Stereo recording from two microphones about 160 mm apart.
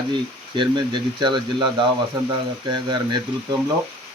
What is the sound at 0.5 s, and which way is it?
Speech, 30° right (ahead or behind).